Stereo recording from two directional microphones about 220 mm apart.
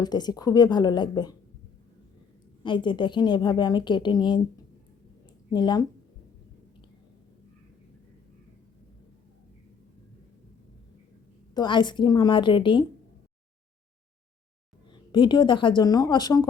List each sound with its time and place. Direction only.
0.0 s a woman's voice: 20° left (ahead or behind)
2.6 s a woman's voice: 20° left (ahead or behind)
5.5 s a woman's voice: 20° left (ahead or behind)
11.5 s a woman's voice: 20° left (ahead or behind)
15.1 s a woman's voice: 20° left (ahead or behind)